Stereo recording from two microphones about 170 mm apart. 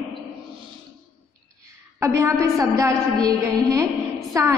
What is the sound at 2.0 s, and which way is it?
A woman's voice, 15° right (ahead or behind).